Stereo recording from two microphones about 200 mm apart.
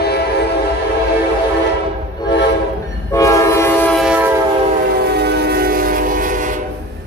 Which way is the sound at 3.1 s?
15° left (ahead or behind).